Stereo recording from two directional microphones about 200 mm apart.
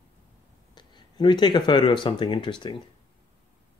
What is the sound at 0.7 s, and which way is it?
Speech, 20° left (ahead or behind).